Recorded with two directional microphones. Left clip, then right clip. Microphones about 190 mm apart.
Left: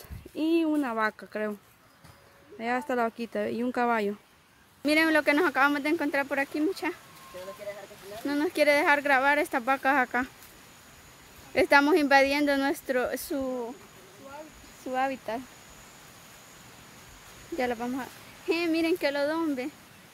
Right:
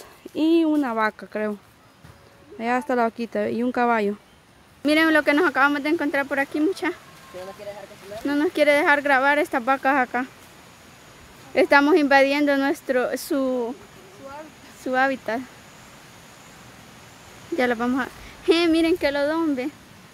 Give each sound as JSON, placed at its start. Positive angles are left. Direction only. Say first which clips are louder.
{"t": 0.4, "sound": "speech", "louder": "right 7 dB", "side_deg": -5}
{"t": 2.6, "sound": "speech", "louder": "right 6 dB", "side_deg": -5}
{"t": 8.3, "sound": "speech", "louder": "right 5 dB", "side_deg": 0}
{"t": 11.5, "sound": "speech", "louder": "right 5 dB", "side_deg": 0}
{"t": 13.3, "sound": "speech", "louder": "right 8 dB", "side_deg": -15}
{"t": 14.9, "sound": "speech", "louder": "right 8 dB", "side_deg": -15}
{"t": 17.6, "sound": "speech", "louder": "right 8 dB", "side_deg": -20}
{"t": 18.8, "sound": "speech", "louder": "right 6 dB", "side_deg": -5}